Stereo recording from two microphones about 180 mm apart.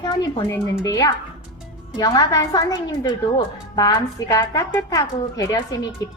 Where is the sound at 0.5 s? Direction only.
15° left (ahead or behind).